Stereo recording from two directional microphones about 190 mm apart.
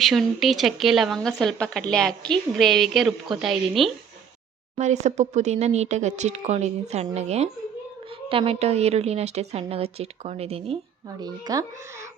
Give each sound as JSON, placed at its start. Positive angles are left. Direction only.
{"t": 0.0, "sound": "speech", "side_deg": 0}
{"t": 4.8, "sound": "speech", "side_deg": -35}
{"t": 11.2, "sound": "speech", "side_deg": -20}